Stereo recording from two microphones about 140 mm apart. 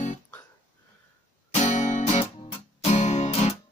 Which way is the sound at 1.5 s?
55° left (ahead or behind).